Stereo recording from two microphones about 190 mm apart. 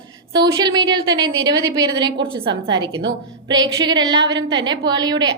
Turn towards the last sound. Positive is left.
turn(degrees=-20)  # may be behind; listen again after turning